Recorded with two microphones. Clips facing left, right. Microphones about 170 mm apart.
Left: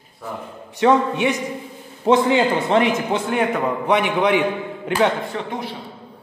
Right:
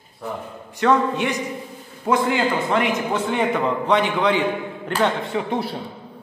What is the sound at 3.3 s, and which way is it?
Speech, 5° left (ahead or behind).